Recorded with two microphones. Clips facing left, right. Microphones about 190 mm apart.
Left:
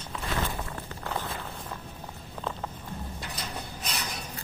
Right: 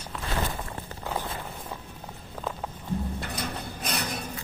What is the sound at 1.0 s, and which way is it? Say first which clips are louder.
Walk: right 2 dB; 15° right (ahead or behind).